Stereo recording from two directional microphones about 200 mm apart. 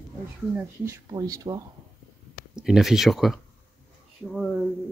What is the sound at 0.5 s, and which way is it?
Speech, 10° right (ahead or behind).